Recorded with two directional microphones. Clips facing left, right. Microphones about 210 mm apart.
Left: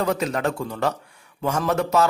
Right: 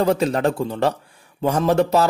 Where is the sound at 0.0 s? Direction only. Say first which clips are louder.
Right 5 dB; 30° right (ahead or behind).